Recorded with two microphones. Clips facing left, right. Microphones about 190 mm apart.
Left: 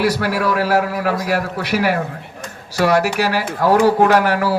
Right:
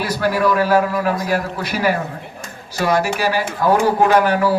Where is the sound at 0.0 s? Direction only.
75° left (ahead or behind).